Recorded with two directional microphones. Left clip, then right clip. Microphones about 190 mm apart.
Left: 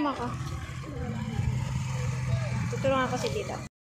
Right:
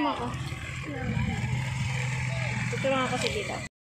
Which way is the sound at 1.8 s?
55° left (ahead or behind).